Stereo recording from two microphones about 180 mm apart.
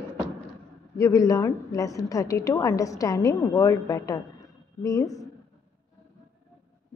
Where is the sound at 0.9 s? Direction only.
20° left (ahead or behind).